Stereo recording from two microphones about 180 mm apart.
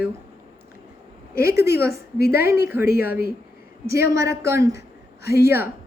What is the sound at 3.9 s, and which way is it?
A woman's voice, 15° right (ahead or behind).